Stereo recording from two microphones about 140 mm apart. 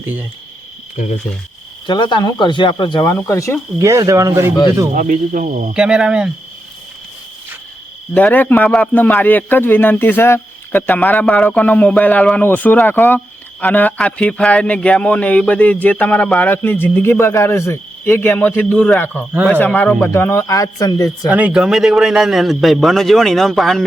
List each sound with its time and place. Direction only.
0.0 s cricket: 15° right (ahead or behind)
1.0 s speech: 75° left (ahead or behind)
1.9 s speech: 35° left (ahead or behind)
3.8 s speech: 20° right (ahead or behind)
4.9 s speech: 70° right (ahead or behind)
5.7 s speech: 5° right (ahead or behind)
8.1 s a man's voice: 10° left (ahead or behind)
21.2 s a man's voice: 10° right (ahead or behind)